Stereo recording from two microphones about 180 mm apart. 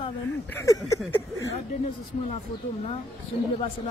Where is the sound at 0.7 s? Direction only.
20° left (ahead or behind).